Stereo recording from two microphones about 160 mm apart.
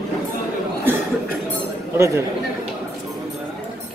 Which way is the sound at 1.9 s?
20° right (ahead or behind).